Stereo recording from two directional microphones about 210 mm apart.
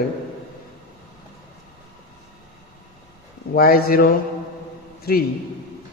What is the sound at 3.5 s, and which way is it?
Speech, 45° left (ahead or behind).